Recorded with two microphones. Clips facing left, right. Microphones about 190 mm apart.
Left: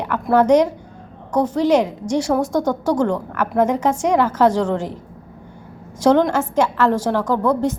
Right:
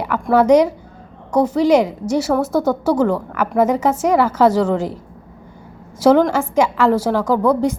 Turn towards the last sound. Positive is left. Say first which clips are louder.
# right 3 dB
turn(degrees=-10)  # may be behind; listen again after turning